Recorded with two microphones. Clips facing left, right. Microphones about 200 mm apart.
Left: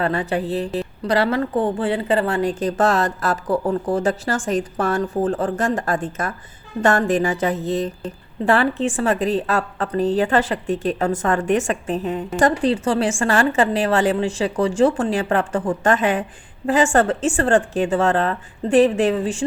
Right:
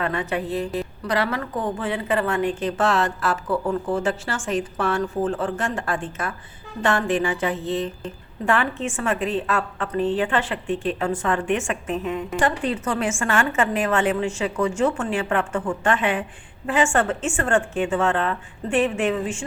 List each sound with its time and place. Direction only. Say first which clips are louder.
0.0 s a woman's voice: left 4 dB; 35° left (ahead or behind)